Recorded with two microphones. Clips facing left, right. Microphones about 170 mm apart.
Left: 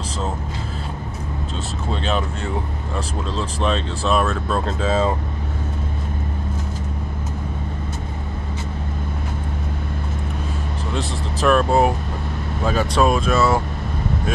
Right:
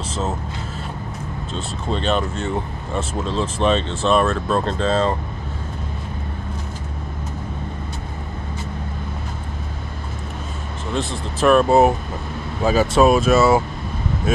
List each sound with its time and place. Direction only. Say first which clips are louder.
1.9 s speech: right 3 dB; 5° left (ahead or behind)
11.4 s speech: right 3 dB; 5° right (ahead or behind)